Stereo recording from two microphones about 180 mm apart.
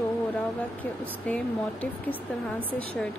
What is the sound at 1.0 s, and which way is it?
Speech, 10° left (ahead or behind).